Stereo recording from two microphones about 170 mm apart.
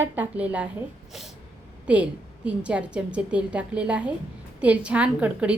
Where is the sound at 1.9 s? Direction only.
5° right (ahead or behind).